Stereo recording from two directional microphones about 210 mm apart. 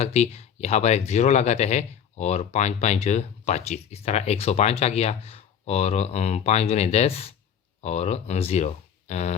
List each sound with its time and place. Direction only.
0.0 s speech: 30° left (ahead or behind)